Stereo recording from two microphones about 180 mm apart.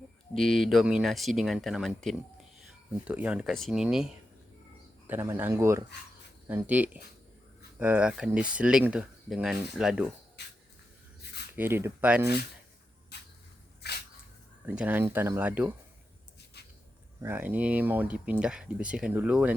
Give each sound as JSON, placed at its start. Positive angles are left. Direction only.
{"t": 0.3, "sound": "speech", "side_deg": 0}
{"t": 3.0, "sound": "speech", "side_deg": -5}
{"t": 10.4, "sound": "spray", "side_deg": 70}
{"t": 11.5, "sound": "speech", "side_deg": -10}
{"t": 13.1, "sound": "a sound", "side_deg": 65}
{"t": 14.7, "sound": "speech", "side_deg": -10}
{"t": 16.6, "sound": "a sound", "side_deg": 65}
{"t": 17.2, "sound": "speech", "side_deg": -10}